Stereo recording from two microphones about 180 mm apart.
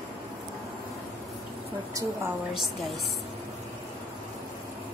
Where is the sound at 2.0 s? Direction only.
20° right (ahead or behind).